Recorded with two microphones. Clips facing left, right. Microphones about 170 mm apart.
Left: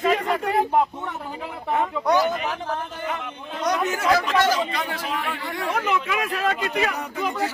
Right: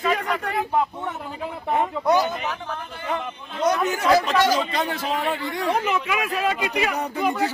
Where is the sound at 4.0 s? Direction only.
20° right (ahead or behind).